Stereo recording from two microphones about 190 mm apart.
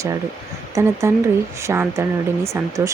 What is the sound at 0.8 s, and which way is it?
Speech, 15° right (ahead or behind).